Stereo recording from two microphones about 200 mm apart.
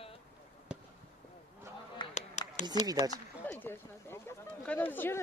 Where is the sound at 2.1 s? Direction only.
35° left (ahead or behind).